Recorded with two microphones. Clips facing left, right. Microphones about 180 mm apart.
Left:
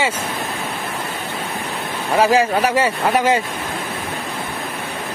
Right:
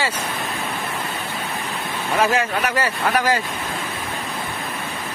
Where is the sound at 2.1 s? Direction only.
30° left (ahead or behind).